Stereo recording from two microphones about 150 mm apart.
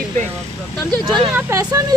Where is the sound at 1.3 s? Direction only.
20° right (ahead or behind).